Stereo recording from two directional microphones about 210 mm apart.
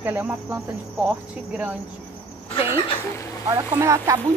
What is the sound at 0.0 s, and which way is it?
Speech, 10° right (ahead or behind).